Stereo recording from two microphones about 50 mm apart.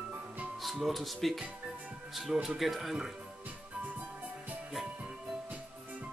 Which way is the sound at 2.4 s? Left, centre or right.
Centre.